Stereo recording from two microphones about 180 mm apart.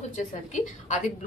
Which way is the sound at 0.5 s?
40° left (ahead or behind).